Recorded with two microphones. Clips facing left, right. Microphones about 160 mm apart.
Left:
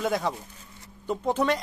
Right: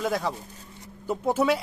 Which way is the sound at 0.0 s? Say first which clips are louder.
Even; centre (ahead or behind).